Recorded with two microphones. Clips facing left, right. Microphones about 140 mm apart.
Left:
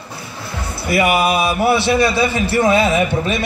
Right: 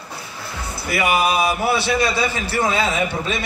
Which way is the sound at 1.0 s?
60° left (ahead or behind).